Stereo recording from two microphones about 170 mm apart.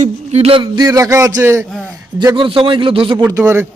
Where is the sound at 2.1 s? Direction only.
30° right (ahead or behind).